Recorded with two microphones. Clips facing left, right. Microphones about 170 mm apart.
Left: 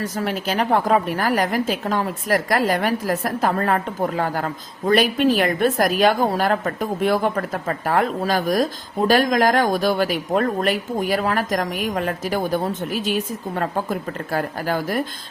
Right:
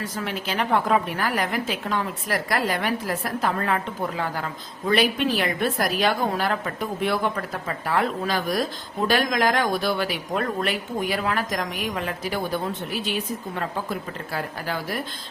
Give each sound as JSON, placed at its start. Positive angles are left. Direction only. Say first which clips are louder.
{"t": 0.0, "sound": "a woman's voice", "louder": "left 5 dB", "side_deg": 40}